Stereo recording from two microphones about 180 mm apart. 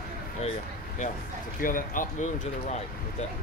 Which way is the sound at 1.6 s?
50° left (ahead or behind).